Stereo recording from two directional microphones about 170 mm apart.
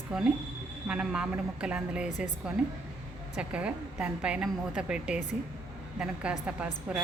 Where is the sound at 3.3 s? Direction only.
5° right (ahead or behind).